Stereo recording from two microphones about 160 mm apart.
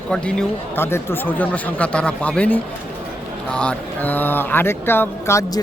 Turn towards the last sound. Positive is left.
turn(degrees=15)  # may be behind; listen again after turning